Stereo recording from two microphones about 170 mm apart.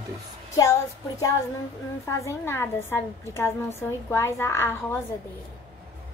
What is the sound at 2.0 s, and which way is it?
A woman's voice, 15° left (ahead or behind).